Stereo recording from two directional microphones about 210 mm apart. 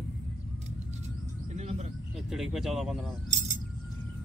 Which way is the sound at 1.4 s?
35° right (ahead or behind).